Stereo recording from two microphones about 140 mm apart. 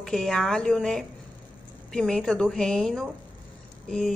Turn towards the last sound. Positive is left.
turn(degrees=5)  # may be behind; listen again after turning